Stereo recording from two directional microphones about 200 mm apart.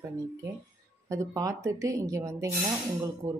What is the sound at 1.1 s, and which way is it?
A woman's voice, 15° right (ahead or behind).